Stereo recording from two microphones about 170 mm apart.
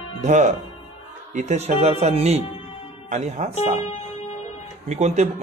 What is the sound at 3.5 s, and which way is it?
Speech, 40° left (ahead or behind).